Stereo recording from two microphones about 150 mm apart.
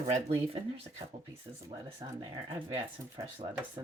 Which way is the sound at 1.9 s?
30° right (ahead or behind).